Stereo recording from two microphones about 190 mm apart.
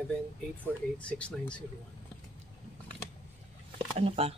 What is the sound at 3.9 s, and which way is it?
Speech, 30° right (ahead or behind).